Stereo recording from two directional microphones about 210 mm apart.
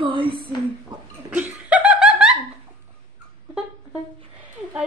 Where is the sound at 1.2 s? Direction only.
5° right (ahead or behind).